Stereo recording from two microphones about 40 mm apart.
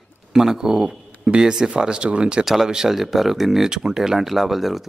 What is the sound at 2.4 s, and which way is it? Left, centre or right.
A woman's voice, centre.